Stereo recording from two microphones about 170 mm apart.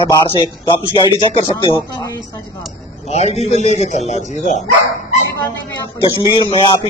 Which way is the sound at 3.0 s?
40° left (ahead or behind).